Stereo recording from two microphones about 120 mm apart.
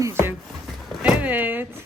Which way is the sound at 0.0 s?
20° right (ahead or behind).